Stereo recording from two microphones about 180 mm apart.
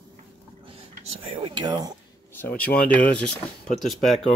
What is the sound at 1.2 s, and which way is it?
Speech, 30° right (ahead or behind).